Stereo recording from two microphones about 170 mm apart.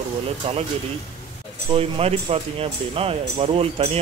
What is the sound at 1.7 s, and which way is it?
Speech, 35° right (ahead or behind).